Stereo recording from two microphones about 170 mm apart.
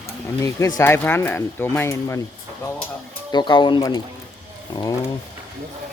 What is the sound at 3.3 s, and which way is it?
Speech, 25° left (ahead or behind).